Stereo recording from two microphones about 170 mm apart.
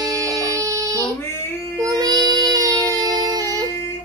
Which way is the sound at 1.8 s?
20° right (ahead or behind).